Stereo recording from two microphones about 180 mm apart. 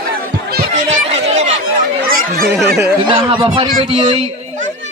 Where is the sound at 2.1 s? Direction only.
55° right (ahead or behind).